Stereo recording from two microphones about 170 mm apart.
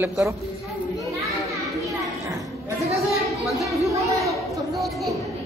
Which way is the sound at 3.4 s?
Centre (ahead or behind).